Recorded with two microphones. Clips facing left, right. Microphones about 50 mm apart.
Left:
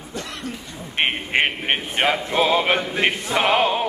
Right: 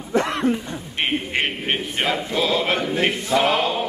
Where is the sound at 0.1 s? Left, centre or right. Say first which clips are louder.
Right 12 dB; right.